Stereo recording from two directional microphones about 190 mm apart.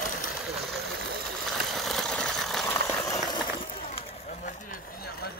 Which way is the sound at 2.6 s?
15° left (ahead or behind).